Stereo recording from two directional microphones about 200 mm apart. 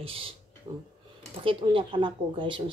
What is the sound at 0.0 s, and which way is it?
Speech, 25° right (ahead or behind).